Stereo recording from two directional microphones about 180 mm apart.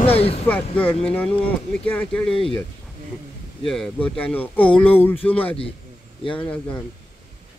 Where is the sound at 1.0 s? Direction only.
5° left (ahead or behind).